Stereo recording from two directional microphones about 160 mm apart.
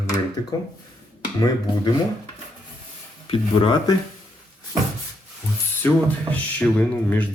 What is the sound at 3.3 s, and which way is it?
Speech, 35° left (ahead or behind).